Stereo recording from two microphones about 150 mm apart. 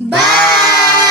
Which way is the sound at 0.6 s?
25° left (ahead or behind).